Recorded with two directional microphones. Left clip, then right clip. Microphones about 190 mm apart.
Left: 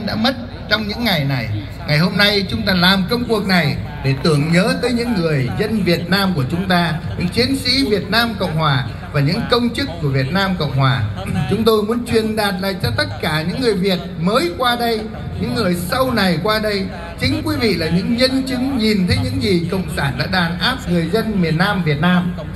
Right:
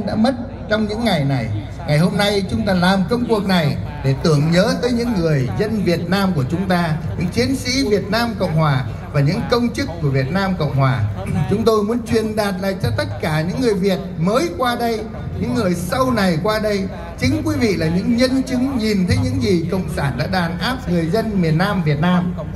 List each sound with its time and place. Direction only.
0.2 s a woman's voice: 50° right (ahead or behind); by 1.4 s 65° right (ahead or behind)
1.9 s a man's voice: 85° right; by 22.2 s 10° right (ahead or behind)